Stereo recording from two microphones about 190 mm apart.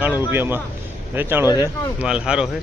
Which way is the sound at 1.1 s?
10° right (ahead or behind).